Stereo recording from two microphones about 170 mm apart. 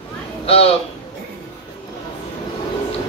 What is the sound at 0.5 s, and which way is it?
Speech, 35° left (ahead or behind).